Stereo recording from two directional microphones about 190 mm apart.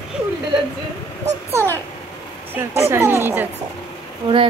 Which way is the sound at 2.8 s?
15° right (ahead or behind).